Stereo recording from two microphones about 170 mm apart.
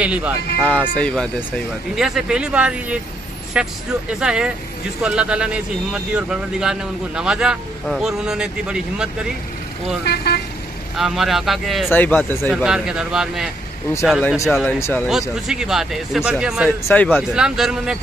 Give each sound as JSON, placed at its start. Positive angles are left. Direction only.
{"t": 0.0, "sound": "speech", "side_deg": -10}
{"t": 0.6, "sound": "a man's voice", "side_deg": 5}
{"t": 10.0, "sound": "speech", "side_deg": 70}
{"t": 11.0, "sound": "speech", "side_deg": 0}
{"t": 11.9, "sound": "speech", "side_deg": 10}
{"t": 12.6, "sound": "speech", "side_deg": -5}
{"t": 14.4, "sound": "speech", "side_deg": 10}
{"t": 15.0, "sound": "speech", "side_deg": -5}
{"t": 16.8, "sound": "speech", "side_deg": 10}
{"t": 17.3, "sound": "speech", "side_deg": 0}